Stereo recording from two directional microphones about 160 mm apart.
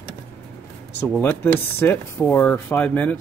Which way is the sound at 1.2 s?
10° left (ahead or behind).